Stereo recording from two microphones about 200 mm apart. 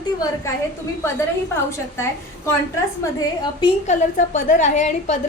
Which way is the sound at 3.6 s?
35° left (ahead or behind).